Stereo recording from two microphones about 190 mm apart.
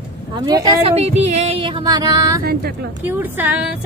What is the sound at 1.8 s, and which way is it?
Music, 20° right (ahead or behind).